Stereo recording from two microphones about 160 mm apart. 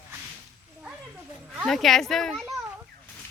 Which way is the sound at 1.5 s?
Centre (ahead or behind).